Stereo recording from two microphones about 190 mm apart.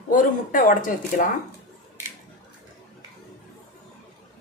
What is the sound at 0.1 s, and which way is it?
Speech, 45° left (ahead or behind).